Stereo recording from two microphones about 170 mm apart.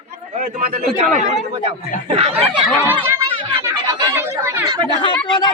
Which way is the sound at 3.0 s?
15° right (ahead or behind).